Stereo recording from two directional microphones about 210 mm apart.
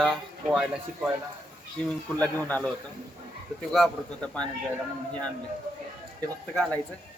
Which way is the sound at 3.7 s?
5° left (ahead or behind).